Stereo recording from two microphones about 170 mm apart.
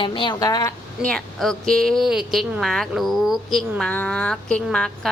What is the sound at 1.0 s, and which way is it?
Speech, 5° left (ahead or behind).